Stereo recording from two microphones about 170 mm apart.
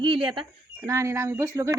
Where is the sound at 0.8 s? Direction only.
15° right (ahead or behind).